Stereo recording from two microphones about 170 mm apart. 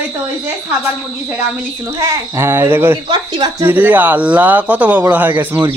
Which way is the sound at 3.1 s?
25° right (ahead or behind).